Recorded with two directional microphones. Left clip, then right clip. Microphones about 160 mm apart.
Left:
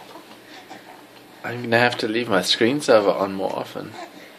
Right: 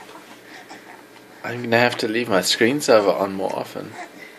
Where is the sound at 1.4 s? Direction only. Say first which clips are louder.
Right 1 dB; centre (ahead or behind).